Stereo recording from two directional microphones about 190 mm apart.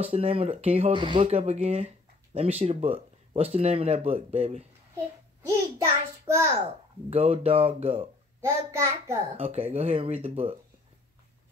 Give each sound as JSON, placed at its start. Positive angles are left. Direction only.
{"t": 0.0, "sound": "speech", "side_deg": -30}
{"t": 5.4, "sound": "a child's voice", "side_deg": -15}
{"t": 7.1, "sound": "speech", "side_deg": -30}
{"t": 8.4, "sound": "a child's voice", "side_deg": -15}
{"t": 9.4, "sound": "speech", "side_deg": -30}